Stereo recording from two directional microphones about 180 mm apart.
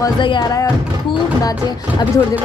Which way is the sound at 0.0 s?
25° left (ahead or behind).